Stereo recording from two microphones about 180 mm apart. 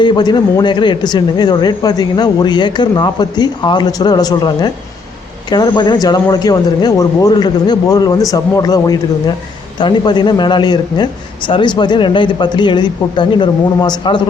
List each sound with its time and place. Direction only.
0.0 s a man's voice: 25° left (ahead or behind)